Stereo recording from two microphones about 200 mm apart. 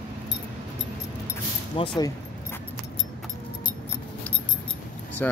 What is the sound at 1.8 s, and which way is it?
Speech, 25° left (ahead or behind).